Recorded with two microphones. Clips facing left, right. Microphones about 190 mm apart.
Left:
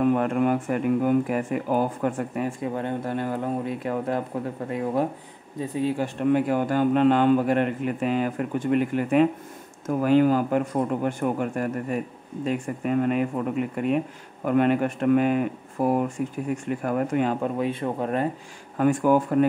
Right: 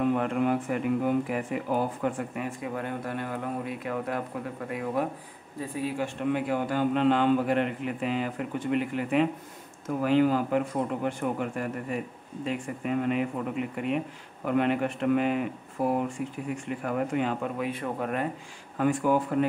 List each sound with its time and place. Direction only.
0.0 s speech: 45° left (ahead or behind); by 18.2 s 30° left (ahead or behind)
18.8 s speech: 45° left (ahead or behind)